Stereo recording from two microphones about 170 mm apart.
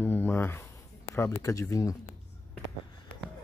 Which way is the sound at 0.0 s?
10° left (ahead or behind).